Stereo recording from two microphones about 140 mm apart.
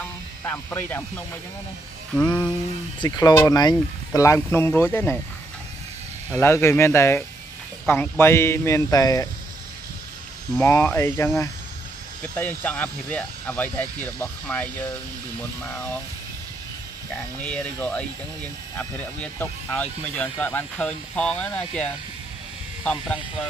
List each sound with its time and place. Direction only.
0.4 s speech: 15° left (ahead or behind)
3.0 s speech: 30° left (ahead or behind)
6.3 s speech: 20° left (ahead or behind)
10.6 s speech: 15° left (ahead or behind)
17.4 s speech: 10° left (ahead or behind)